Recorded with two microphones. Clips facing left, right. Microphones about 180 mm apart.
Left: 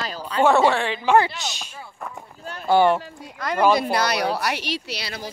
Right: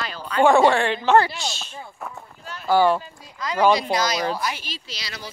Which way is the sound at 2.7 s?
20° left (ahead or behind).